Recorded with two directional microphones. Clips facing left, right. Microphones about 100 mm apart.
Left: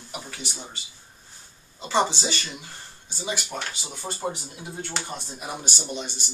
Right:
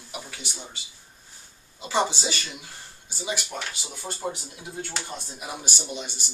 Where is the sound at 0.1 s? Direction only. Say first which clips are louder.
Left 1 dB; centre (ahead or behind).